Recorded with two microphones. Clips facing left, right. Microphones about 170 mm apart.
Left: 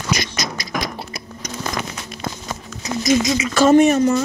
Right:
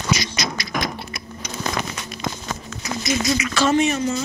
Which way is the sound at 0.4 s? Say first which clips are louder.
Even; 40° left (ahead or behind).